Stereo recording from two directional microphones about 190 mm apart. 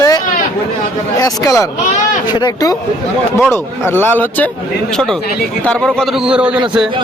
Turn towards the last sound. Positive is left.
turn(degrees=-5)  # may be behind; listen again after turning